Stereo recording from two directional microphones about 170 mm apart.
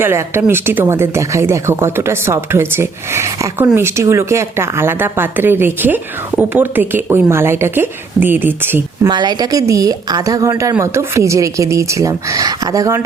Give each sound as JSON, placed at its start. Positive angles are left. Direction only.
{"t": 0.0, "sound": "speech", "side_deg": -15}
{"t": 9.0, "sound": "a woman's voice", "side_deg": -25}